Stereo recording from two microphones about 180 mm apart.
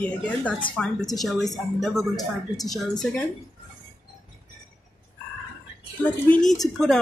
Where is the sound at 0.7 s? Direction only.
Centre (ahead or behind).